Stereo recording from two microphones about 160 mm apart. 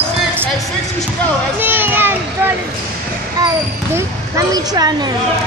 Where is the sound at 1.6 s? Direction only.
10° right (ahead or behind).